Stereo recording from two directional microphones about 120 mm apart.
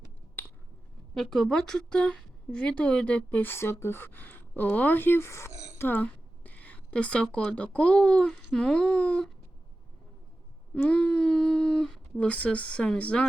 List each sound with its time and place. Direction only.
0.4 s a sound: 15° left (ahead or behind)
1.1 s speech: 5° left (ahead or behind); by 5.5 s 20° left (ahead or behind)
5.5 s speech: 75° right (ahead or behind)
5.7 s a woman's voice: 20° left (ahead or behind)
10.8 s speech: 10° left (ahead or behind)